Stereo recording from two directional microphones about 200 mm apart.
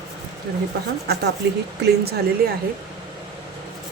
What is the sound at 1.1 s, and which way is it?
A woman's voice, 55° right (ahead or behind).